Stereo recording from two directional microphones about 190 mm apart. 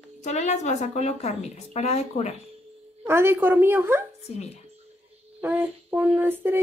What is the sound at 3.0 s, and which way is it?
A woman's voice, 10° right (ahead or behind).